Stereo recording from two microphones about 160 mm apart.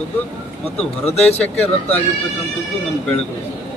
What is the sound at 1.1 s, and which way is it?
Speech, 40° left (ahead or behind).